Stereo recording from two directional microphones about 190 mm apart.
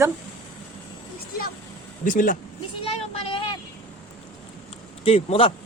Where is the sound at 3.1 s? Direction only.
25° left (ahead or behind).